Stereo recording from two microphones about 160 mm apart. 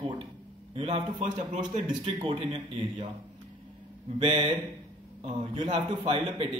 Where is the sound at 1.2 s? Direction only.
55° right (ahead or behind).